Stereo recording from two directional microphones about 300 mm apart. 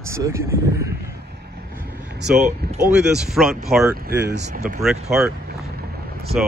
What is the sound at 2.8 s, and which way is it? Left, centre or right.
Speech, centre.